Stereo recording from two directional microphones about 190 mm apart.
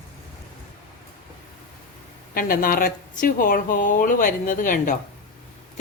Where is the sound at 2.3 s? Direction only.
50° left (ahead or behind).